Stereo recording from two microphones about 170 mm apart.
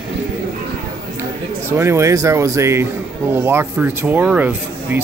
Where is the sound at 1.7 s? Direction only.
15° right (ahead or behind).